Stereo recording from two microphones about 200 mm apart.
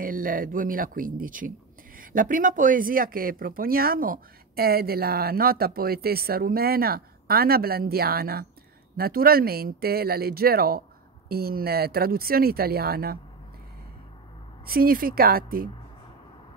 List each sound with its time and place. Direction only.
0.0 s speech: 45° right (ahead or behind)
14.7 s speech: 45° right (ahead or behind)